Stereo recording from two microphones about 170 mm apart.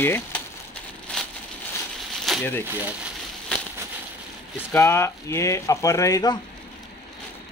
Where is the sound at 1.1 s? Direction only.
5° left (ahead or behind).